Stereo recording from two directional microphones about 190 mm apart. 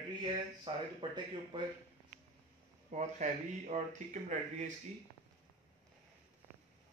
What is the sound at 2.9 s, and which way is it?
Speech, 40° right (ahead or behind).